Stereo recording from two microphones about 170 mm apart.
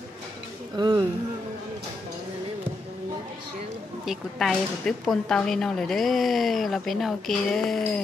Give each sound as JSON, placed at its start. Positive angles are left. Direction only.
{"t": 0.7, "sound": "speech", "side_deg": -25}
{"t": 4.0, "sound": "speech", "side_deg": 0}